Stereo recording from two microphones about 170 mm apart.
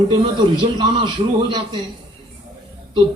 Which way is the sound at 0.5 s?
30° right (ahead or behind).